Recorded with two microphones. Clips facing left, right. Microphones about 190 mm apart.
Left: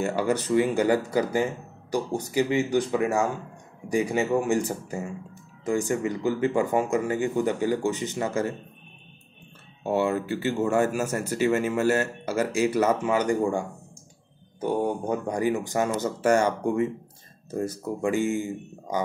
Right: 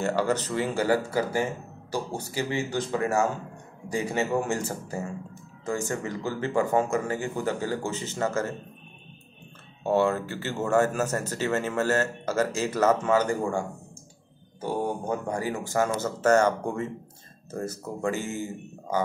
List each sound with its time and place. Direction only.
0.0 s speech: 10° left (ahead or behind)
9.8 s speech: 15° left (ahead or behind)